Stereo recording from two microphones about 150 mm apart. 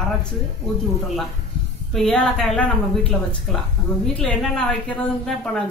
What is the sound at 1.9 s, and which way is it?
Speech, 5° left (ahead or behind).